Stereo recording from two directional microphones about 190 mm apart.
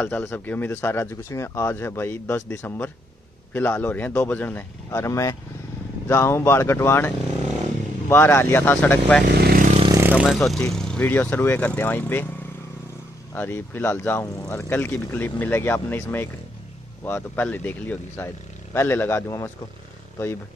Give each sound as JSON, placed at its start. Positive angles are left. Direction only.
{"t": 0.0, "sound": "speech", "side_deg": 10}
{"t": 8.1, "sound": "speech", "side_deg": 10}
{"t": 9.4, "sound": "vehicle", "side_deg": -50}
{"t": 9.9, "sound": "speech", "side_deg": -10}
{"t": 13.3, "sound": "speech", "side_deg": 10}